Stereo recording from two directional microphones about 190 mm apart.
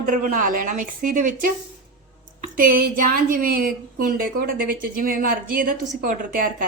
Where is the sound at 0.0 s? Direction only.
45° right (ahead or behind).